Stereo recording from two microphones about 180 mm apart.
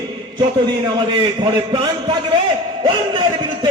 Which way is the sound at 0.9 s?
25° right (ahead or behind).